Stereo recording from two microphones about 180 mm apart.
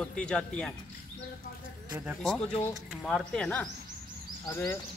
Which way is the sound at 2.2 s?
5° left (ahead or behind).